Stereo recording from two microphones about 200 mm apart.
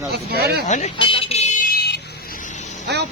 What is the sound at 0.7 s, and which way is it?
Speech, 35° left (ahead or behind).